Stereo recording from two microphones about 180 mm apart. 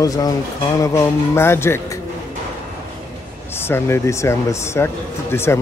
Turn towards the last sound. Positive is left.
turn(degrees=15)  # may be behind; listen again after turning